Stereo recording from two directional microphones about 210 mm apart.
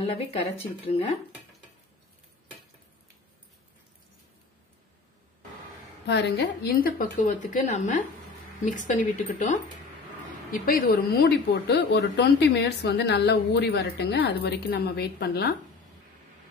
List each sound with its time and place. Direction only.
0.0 s speech: 30° left (ahead or behind)
6.0 s speech: 55° left (ahead or behind)